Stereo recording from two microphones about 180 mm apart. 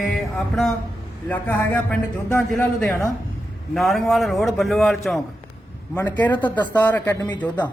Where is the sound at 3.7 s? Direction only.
Centre (ahead or behind).